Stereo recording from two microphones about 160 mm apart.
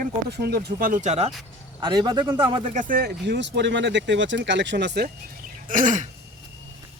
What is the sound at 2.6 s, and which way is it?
Speech, 55° right (ahead or behind).